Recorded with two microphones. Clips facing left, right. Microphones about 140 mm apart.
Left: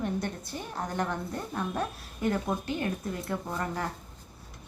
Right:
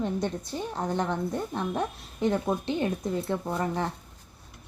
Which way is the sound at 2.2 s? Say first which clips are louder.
Right 3 dB; 25° right (ahead or behind).